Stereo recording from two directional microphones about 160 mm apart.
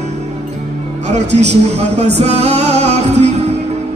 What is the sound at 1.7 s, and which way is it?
Music, 45° right (ahead or behind).